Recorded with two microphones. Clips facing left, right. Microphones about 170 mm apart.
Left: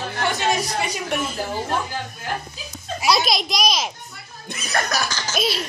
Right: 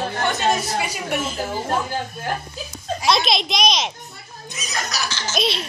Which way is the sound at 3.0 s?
5° left (ahead or behind).